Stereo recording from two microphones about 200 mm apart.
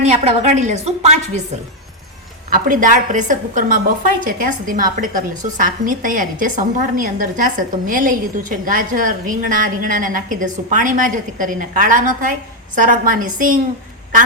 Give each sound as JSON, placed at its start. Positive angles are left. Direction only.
{"t": 0.0, "sound": "a woman's voice", "side_deg": -35}
{"t": 2.5, "sound": "a woman's voice", "side_deg": -40}